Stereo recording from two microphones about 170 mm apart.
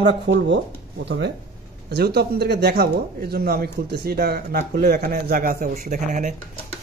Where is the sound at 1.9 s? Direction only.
70° right (ahead or behind); by 6.3 s 45° right (ahead or behind).